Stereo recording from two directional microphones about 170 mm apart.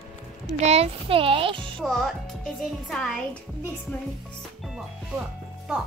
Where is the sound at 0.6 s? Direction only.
35° right (ahead or behind).